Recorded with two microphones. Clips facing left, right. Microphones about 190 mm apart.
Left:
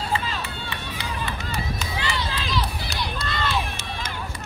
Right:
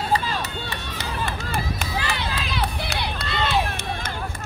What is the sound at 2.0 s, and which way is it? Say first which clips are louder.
Run: even; 60° right (ahead or behind).